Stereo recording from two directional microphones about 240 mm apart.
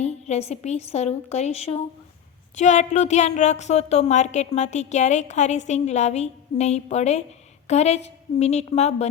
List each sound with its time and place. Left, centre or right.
0.0 s a woman's voice: left